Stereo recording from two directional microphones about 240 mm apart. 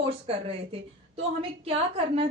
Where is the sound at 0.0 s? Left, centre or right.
Right.